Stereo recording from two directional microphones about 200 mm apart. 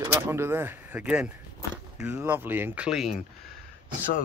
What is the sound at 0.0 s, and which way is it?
Speech, 15° right (ahead or behind).